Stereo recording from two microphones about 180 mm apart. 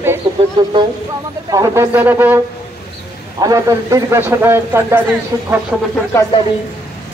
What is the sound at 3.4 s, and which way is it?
A man's voice, 20° right (ahead or behind).